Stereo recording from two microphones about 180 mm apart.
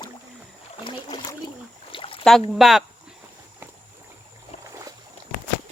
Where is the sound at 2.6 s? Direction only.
Centre (ahead or behind).